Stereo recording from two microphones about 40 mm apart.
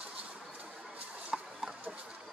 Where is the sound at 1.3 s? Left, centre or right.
Centre.